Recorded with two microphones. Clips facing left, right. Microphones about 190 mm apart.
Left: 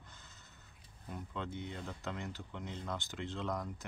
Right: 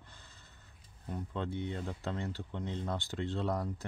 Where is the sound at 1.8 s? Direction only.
35° right (ahead or behind).